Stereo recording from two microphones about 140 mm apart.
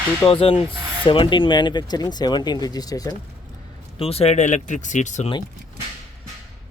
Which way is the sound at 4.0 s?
45° left (ahead or behind).